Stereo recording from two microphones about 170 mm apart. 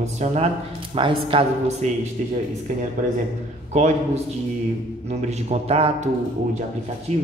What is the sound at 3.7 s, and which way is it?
Speech, 40° right (ahead or behind).